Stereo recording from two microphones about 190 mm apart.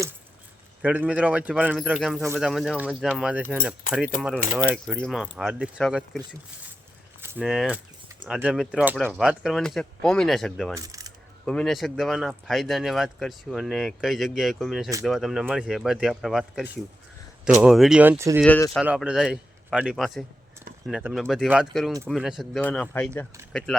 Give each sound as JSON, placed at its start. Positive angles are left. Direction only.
{"t": 0.8, "sound": "speech", "side_deg": -5}
{"t": 7.2, "sound": "keys jangling", "side_deg": -10}
{"t": 7.4, "sound": "speech", "side_deg": 0}
{"t": 10.8, "sound": "coin", "side_deg": -20}
{"t": 11.4, "sound": "speech", "side_deg": 5}
{"t": 18.4, "sound": "speech", "side_deg": 10}
{"t": 18.8, "sound": "speech", "side_deg": -5}